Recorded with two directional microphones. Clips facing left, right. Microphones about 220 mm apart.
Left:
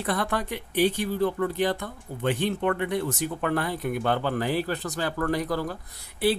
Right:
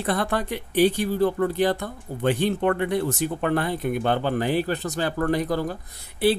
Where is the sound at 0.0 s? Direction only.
30° right (ahead or behind).